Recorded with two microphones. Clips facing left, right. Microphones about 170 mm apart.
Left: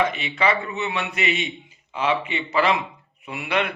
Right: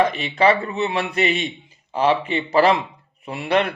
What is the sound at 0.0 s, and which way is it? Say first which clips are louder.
A man's voice: right 5 dB; 35° right (ahead or behind).